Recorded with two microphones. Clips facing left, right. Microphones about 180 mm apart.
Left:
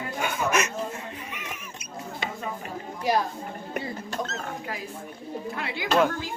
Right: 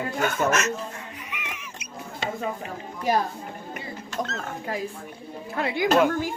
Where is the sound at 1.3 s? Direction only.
40° left (ahead or behind).